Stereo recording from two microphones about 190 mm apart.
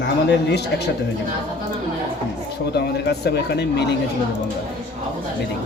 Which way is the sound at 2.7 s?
60° left (ahead or behind).